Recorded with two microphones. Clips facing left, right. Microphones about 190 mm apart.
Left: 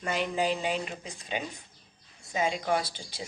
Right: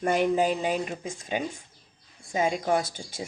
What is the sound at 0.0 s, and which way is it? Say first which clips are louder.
A woman's voice: right 6 dB; 50° right (ahead or behind).